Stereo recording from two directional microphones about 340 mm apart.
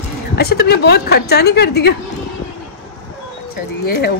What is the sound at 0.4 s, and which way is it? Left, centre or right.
A woman's voice, left.